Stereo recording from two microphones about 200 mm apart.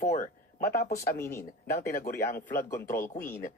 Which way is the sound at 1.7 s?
50° left (ahead or behind).